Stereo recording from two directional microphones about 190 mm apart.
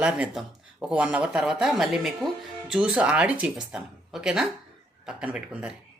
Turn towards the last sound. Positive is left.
turn(degrees=-5)  # may be behind; listen again after turning